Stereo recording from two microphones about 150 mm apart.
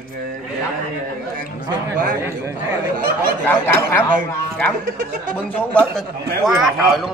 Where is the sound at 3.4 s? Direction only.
15° left (ahead or behind).